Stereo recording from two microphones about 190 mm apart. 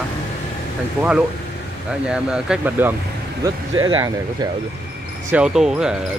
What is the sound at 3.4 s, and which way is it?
Speech, 20° right (ahead or behind).